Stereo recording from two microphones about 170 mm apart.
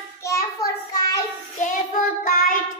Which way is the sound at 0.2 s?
20° left (ahead or behind).